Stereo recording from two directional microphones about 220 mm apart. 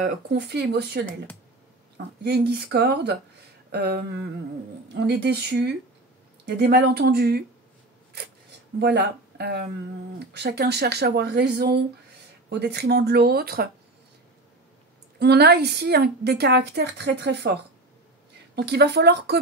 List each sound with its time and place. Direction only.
0.0 s a woman's voice: 50° right (ahead or behind)
2.2 s a woman's voice: 45° right (ahead or behind)
8.7 s a woman's voice: 45° right (ahead or behind)
15.1 s a woman's voice: 50° right (ahead or behind)